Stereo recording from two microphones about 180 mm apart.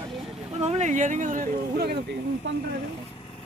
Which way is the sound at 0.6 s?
40° right (ahead or behind).